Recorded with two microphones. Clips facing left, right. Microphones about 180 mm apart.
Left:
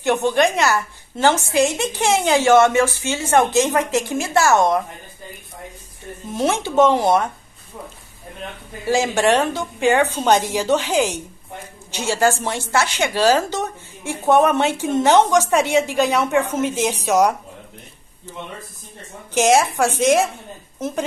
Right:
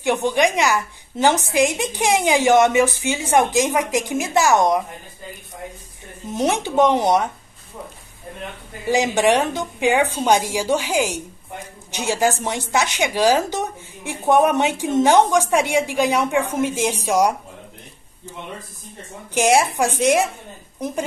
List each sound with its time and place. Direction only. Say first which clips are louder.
0.0 s a woman's voice: left 1 dB; 15° right (ahead or behind)
6.3 s a woman's voice: left 1 dB; 15° right (ahead or behind)
8.8 s a woman's voice: even; 15° right (ahead or behind)
19.3 s a woman's voice: left 1 dB; 10° right (ahead or behind)